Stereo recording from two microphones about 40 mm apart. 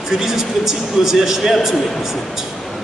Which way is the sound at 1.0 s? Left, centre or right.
Centre.